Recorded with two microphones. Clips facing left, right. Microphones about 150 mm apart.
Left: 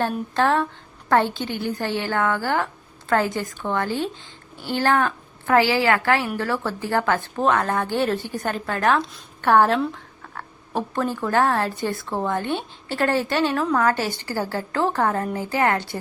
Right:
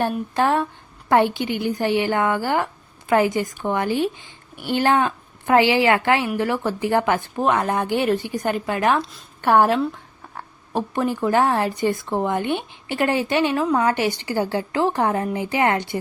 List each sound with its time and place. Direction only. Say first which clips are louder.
0.3 s a woman's voice: even; 15° right (ahead or behind)